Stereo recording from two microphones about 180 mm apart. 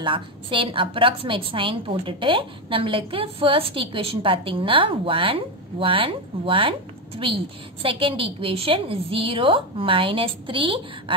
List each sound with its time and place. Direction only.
0.0 s a woman's voice: 30° right (ahead or behind)